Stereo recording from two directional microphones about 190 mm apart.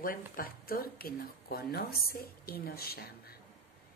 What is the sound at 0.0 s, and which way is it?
A woman's voice, 50° left (ahead or behind).